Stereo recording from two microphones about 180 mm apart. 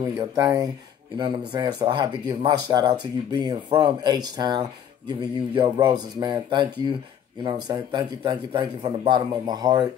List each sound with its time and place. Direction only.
0.0 s speech: 20° right (ahead or behind)